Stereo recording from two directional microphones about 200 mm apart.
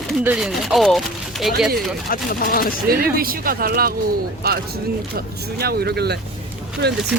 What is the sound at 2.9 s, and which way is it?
Speech, 50° right (ahead or behind).